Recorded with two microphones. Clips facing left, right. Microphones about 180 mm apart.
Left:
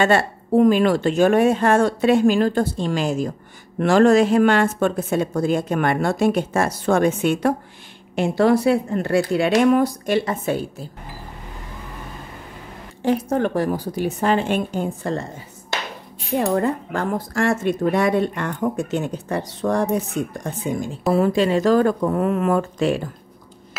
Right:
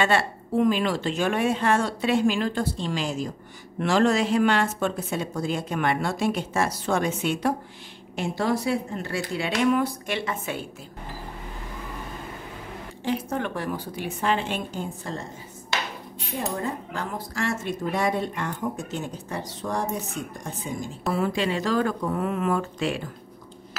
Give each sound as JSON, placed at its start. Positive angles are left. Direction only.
{"t": 0.0, "sound": "a woman's voice", "side_deg": 45}
{"t": 13.0, "sound": "a woman's voice", "side_deg": 45}
{"t": 16.3, "sound": "speech", "side_deg": 70}
{"t": 21.1, "sound": "a woman's voice", "side_deg": 40}